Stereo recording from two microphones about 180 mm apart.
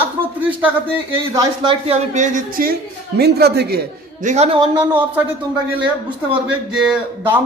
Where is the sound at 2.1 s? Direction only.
50° right (ahead or behind).